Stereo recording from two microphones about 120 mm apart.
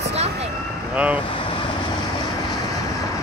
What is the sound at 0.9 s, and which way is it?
Speech, 10° right (ahead or behind).